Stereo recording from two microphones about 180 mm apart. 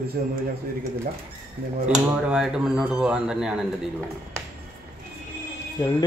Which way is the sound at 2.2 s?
5° right (ahead or behind).